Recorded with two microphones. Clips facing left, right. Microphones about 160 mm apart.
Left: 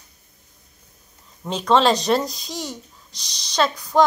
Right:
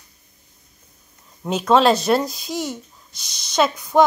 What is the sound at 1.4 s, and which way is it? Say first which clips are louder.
Speech: right 2 dB; 5° right (ahead or behind).